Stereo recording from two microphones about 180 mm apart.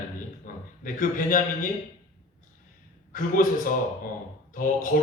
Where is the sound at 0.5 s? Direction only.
50° left (ahead or behind).